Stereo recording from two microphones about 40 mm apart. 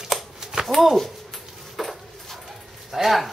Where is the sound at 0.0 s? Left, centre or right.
Centre.